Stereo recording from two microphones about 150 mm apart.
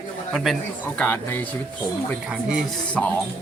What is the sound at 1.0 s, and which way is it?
Speech, 10° left (ahead or behind).